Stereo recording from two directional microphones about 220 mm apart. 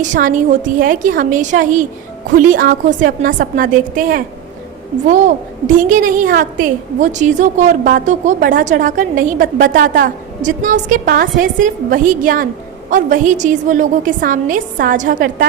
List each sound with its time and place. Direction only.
0.0 s a woman's voice: 35° right (ahead or behind)